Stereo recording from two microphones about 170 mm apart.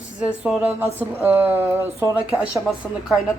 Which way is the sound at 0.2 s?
5° right (ahead or behind).